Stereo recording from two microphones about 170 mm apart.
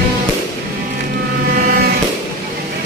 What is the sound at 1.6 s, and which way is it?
Livestock, 60° right (ahead or behind).